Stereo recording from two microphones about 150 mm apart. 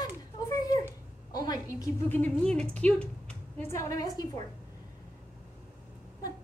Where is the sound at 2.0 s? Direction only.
10° left (ahead or behind).